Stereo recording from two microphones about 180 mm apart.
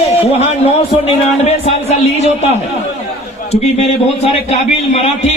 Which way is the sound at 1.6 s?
35° left (ahead or behind).